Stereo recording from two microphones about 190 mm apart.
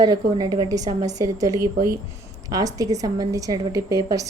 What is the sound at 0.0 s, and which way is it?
A woman's voice, 20° right (ahead or behind).